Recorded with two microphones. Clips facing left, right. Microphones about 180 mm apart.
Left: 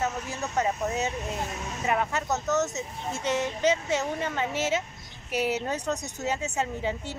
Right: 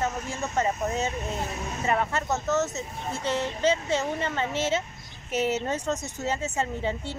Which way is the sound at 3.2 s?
15° left (ahead or behind).